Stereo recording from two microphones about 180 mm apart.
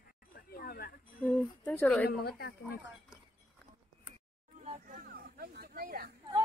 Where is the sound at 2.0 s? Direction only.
60° left (ahead or behind).